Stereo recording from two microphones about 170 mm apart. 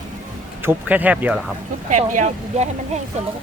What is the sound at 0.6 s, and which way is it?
Speech, 10° right (ahead or behind).